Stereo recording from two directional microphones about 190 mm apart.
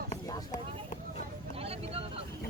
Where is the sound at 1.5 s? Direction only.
30° right (ahead or behind).